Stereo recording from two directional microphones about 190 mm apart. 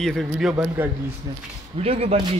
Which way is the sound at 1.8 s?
30° right (ahead or behind).